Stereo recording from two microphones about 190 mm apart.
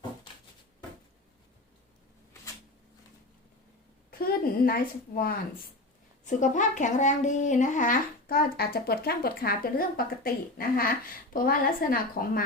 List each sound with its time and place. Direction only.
4.2 s speech: 50° left (ahead or behind)
6.2 s speech: 40° left (ahead or behind)